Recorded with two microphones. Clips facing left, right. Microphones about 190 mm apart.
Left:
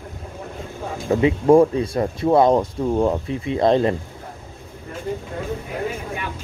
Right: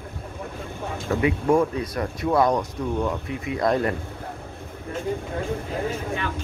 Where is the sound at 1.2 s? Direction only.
30° left (ahead or behind).